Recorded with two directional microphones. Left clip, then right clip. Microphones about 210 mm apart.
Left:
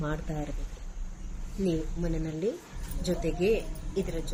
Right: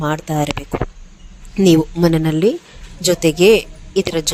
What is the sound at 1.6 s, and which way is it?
A woman's voice, 55° right (ahead or behind).